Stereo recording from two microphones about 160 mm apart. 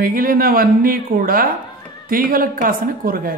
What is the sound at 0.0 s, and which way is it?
Speech, 65° right (ahead or behind).